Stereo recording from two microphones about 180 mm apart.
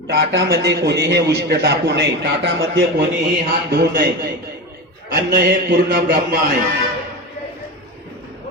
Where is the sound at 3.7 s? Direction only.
60° right (ahead or behind).